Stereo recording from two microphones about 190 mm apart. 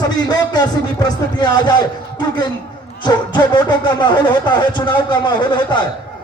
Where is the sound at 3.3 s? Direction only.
25° left (ahead or behind).